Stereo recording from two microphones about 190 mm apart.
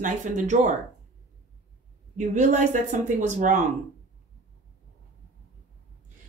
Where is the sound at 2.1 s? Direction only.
40° right (ahead or behind).